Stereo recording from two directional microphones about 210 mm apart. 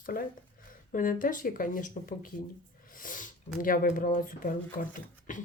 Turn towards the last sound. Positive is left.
turn(degrees=35)  # may be behind; listen again after turning